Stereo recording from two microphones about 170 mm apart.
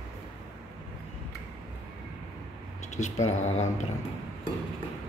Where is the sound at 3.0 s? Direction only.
40° left (ahead or behind).